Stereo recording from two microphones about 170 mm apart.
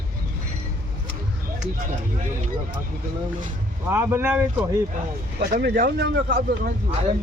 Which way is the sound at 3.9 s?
15° right (ahead or behind).